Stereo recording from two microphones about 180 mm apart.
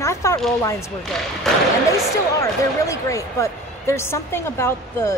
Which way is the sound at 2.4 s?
15° left (ahead or behind).